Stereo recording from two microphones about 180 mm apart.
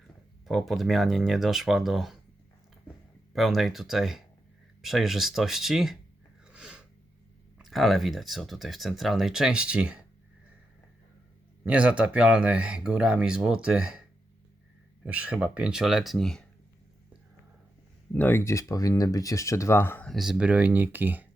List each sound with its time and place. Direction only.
0.4 s speech: centre (ahead or behind)
3.3 s speech: centre (ahead or behind)
6.5 s gasp: 5° right (ahead or behind)
7.6 s speech: centre (ahead or behind)
11.6 s speech: 5° right (ahead or behind)
15.0 s speech: 5° right (ahead or behind)
18.1 s speech: 10° left (ahead or behind)
20.1 s speech: centre (ahead or behind)